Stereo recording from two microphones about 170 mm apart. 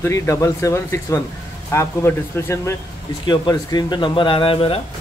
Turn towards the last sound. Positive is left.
turn(degrees=35)  # may be behind; listen again after turning